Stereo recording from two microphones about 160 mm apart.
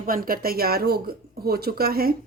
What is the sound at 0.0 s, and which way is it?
A woman's voice, 65° right (ahead or behind).